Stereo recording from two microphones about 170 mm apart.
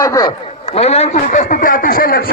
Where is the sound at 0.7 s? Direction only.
40° left (ahead or behind); by 2.2 s 55° left (ahead or behind).